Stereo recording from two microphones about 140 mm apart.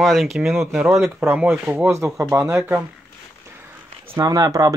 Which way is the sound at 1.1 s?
10° right (ahead or behind).